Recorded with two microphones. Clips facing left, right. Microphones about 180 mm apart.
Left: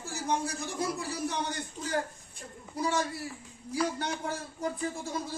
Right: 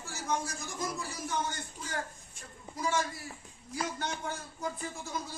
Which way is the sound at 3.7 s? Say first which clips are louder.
Left 5 dB; 30° left (ahead or behind).